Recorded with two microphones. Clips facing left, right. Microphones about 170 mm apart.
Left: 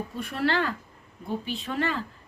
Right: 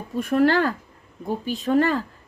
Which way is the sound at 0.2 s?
45° right (ahead or behind).